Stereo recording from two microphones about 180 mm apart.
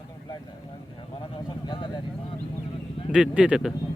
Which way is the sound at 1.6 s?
25° left (ahead or behind).